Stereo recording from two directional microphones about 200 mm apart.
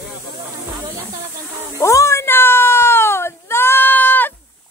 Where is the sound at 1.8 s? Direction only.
15° left (ahead or behind).